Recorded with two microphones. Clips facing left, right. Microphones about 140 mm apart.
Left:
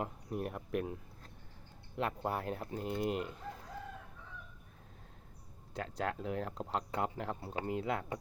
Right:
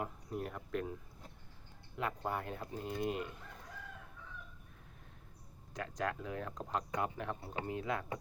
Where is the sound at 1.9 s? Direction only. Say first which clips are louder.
Left 2 dB; 25° left (ahead or behind).